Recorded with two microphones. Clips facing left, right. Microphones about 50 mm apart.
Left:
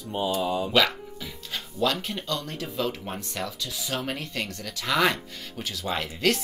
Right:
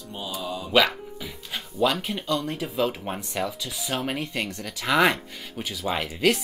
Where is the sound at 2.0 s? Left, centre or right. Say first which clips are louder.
Right 4 dB; centre.